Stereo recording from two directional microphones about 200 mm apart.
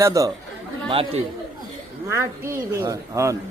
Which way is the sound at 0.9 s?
30° right (ahead or behind).